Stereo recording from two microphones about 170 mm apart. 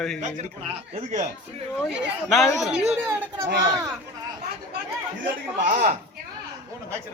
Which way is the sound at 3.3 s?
20° right (ahead or behind).